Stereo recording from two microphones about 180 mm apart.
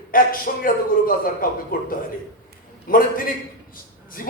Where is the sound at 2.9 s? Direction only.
50° left (ahead or behind).